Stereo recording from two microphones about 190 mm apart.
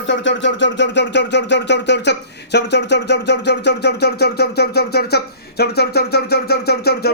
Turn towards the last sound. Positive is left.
turn(degrees=55)  # may be behind; listen again after turning